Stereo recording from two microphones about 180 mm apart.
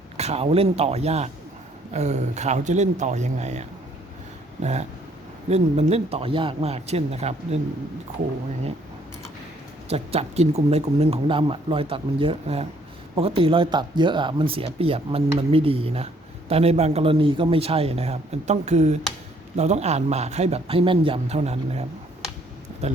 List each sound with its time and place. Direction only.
0.2 s speech: 35° right (ahead or behind)
9.9 s speech: 35° right (ahead or behind)